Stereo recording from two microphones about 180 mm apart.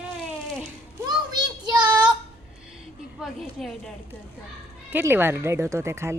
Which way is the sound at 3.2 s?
Centre (ahead or behind).